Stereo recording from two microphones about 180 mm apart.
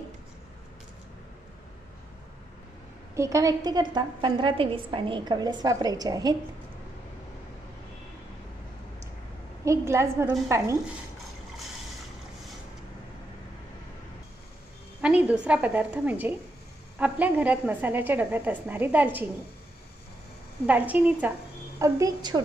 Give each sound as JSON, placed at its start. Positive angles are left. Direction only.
{"t": 3.2, "sound": "a woman's voice", "side_deg": -15}
{"t": 9.7, "sound": "a woman's voice", "side_deg": -15}
{"t": 15.0, "sound": "a woman's voice", "side_deg": -5}
{"t": 20.6, "sound": "a woman's voice", "side_deg": -10}